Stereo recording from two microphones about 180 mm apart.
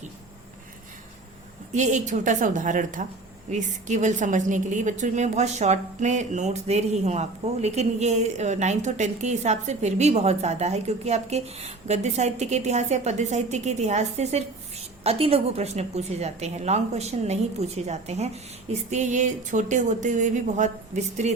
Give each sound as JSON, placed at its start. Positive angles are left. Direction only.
{"t": 1.7, "sound": "a woman's voice", "side_deg": -40}